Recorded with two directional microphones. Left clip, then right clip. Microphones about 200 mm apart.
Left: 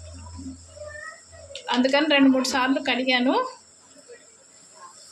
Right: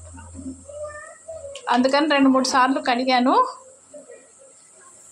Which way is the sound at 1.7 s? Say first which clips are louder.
Right 2 dB; 10° right (ahead or behind).